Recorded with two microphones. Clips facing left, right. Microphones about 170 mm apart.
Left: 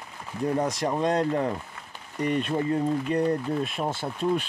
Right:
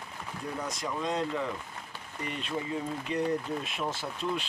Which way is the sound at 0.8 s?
60° left (ahead or behind).